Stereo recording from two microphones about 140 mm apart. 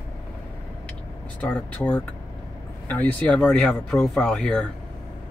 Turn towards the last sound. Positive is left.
turn(degrees=5)  # may be behind; listen again after turning